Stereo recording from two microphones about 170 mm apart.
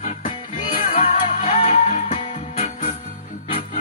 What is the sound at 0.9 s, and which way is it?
Music, 45° left (ahead or behind).